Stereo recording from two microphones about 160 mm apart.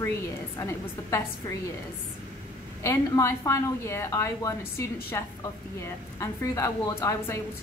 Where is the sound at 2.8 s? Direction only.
20° left (ahead or behind).